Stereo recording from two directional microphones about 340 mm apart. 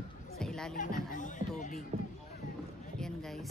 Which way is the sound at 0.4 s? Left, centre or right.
Centre.